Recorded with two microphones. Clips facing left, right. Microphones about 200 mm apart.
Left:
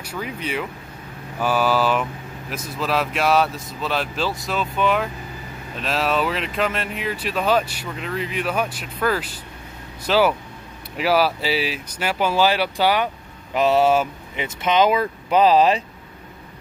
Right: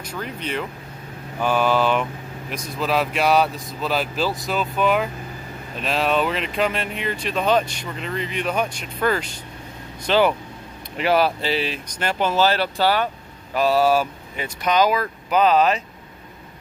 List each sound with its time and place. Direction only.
0.0 s speech: 10° left (ahead or behind); by 15.8 s 30° left (ahead or behind)